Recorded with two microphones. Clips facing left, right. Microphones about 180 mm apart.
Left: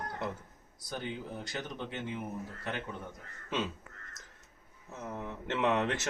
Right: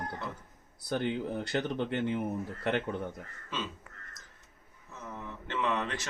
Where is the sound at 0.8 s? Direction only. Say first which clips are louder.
Right 7 dB; 60° right (ahead or behind).